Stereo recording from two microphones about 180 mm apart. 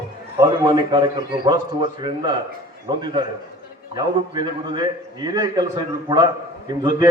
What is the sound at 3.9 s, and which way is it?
A man's voice, 25° right (ahead or behind).